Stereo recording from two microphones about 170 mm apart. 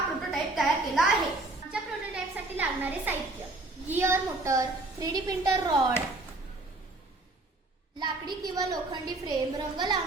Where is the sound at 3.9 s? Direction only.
15° right (ahead or behind).